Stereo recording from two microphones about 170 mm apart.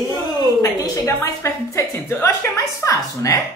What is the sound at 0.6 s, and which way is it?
A woman's voice, 20° left (ahead or behind).